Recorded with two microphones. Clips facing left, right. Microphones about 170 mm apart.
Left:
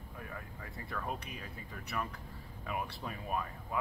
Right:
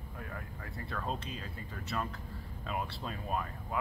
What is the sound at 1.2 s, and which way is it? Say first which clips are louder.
Speech: right 3 dB; 15° left (ahead or behind).